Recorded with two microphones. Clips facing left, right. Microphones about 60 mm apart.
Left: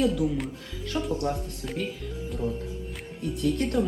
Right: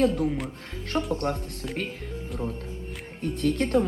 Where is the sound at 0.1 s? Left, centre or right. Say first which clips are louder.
Even; right.